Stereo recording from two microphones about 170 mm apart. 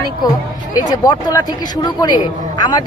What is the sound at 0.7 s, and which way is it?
Speech, 25° left (ahead or behind).